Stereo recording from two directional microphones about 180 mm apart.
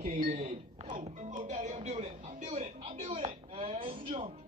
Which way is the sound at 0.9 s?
45° right (ahead or behind).